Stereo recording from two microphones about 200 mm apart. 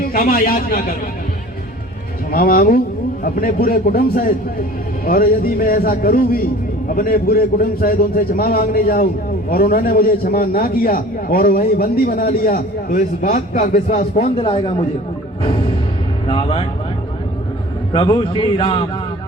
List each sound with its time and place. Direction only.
0.0 s a man's voice: 45° left (ahead or behind)
2.3 s a man's voice: 45° left (ahead or behind)
13.0 s a man's voice: 35° left (ahead or behind)
14.3 s a man's voice: 25° left (ahead or behind)
15.4 s music: 25° left (ahead or behind)
16.2 s speech: 25° left (ahead or behind)
17.9 s a man's voice: 25° left (ahead or behind)